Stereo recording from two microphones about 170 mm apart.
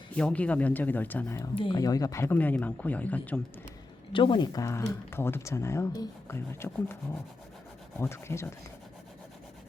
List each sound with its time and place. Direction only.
0.2 s speech: 5° left (ahead or behind)
1.5 s speech: 25° left (ahead or behind); by 3.4 s 10° left (ahead or behind)
4.1 s speech: 30° left (ahead or behind)
7.9 s speech: 15° left (ahead or behind)